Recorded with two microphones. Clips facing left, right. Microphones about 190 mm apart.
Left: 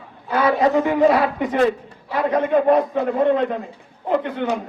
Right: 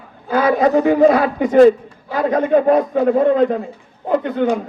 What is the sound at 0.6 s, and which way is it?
A man's voice, 35° right (ahead or behind).